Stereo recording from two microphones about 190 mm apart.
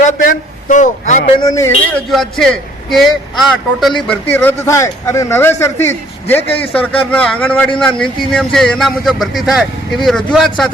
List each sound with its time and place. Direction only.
0.2 s speech: 45° left (ahead or behind)
1.4 s speech: 15° left (ahead or behind)
2.0 s speech: centre (ahead or behind)